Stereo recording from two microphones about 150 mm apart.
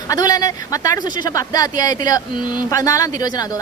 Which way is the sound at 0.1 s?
25° left (ahead or behind).